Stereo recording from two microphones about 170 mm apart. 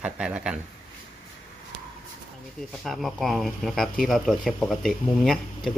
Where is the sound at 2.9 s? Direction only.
Centre (ahead or behind).